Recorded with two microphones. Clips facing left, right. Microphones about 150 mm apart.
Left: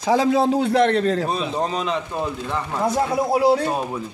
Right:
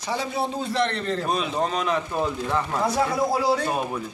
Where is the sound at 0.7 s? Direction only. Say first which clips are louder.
Left 7 dB; 50° left (ahead or behind).